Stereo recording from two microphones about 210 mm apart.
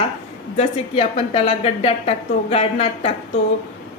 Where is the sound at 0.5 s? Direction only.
30° left (ahead or behind).